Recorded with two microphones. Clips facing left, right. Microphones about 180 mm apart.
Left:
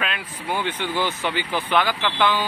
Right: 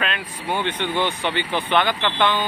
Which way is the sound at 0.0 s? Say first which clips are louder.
Right 2 dB; 5° left (ahead or behind).